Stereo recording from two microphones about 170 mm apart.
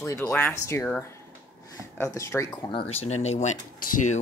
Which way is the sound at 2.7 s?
35° left (ahead or behind).